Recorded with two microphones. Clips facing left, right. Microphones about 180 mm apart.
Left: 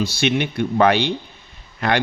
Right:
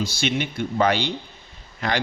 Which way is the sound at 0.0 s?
60° left (ahead or behind).